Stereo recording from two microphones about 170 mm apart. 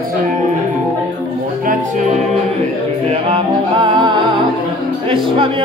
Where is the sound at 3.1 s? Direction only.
35° right (ahead or behind).